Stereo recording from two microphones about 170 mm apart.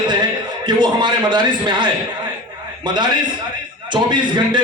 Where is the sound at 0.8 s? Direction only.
25° right (ahead or behind).